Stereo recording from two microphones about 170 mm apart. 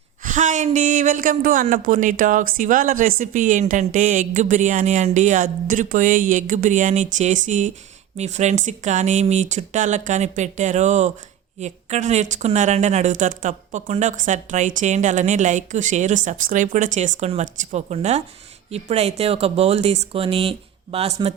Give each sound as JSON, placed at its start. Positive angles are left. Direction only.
{"t": 0.2, "sound": "speech", "side_deg": -50}